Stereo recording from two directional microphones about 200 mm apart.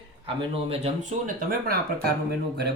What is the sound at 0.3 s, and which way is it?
Speech, 30° right (ahead or behind).